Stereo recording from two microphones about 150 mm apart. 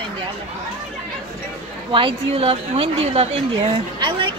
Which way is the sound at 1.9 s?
35° right (ahead or behind).